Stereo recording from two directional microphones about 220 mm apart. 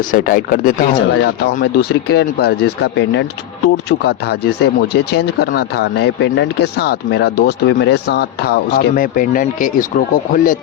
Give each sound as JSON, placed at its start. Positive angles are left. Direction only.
{"t": 0.1, "sound": "speech", "side_deg": 40}